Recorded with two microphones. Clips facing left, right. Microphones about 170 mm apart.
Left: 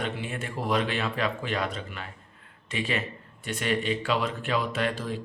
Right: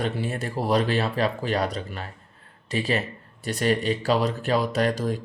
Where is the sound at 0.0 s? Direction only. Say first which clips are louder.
Right 5 dB; 35° right (ahead or behind).